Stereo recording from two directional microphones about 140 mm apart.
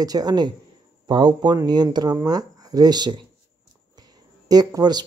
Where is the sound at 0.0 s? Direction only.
30° right (ahead or behind).